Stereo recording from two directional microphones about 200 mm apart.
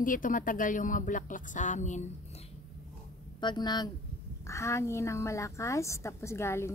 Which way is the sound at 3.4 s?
20° left (ahead or behind).